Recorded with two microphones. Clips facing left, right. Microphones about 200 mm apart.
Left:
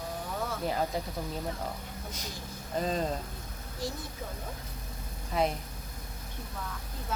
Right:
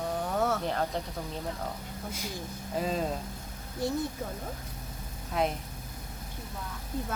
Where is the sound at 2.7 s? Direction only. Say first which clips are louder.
Even; 5° right (ahead or behind).